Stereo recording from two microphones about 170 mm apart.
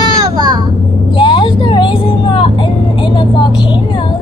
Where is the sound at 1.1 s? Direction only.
30° left (ahead or behind).